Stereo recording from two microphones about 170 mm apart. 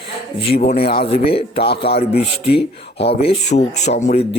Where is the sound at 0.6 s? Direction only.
60° left (ahead or behind).